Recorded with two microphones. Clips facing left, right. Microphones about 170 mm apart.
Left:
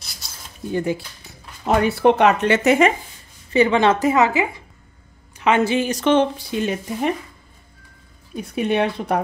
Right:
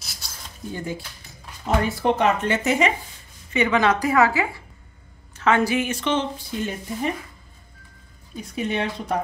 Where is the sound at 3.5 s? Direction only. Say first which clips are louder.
Left 4 dB; 30° left (ahead or behind).